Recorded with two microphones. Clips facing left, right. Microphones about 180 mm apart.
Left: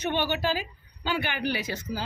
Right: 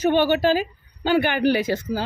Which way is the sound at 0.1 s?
50° right (ahead or behind).